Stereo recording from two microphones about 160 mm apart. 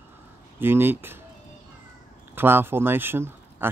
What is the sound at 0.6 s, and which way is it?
Speech, 15° right (ahead or behind).